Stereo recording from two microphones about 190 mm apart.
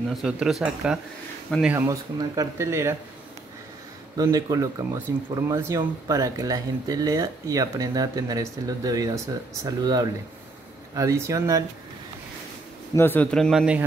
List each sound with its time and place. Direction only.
0.1 s a man's voice: centre (ahead or behind)
4.2 s speech: 20° right (ahead or behind)
12.9 s a man's voice: 10° left (ahead or behind)